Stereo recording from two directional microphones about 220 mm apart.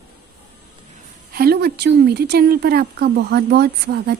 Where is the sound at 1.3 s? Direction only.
45° right (ahead or behind).